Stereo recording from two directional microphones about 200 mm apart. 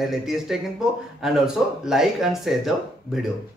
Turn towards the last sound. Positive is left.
turn(degrees=0)  # may be behind; listen again after turning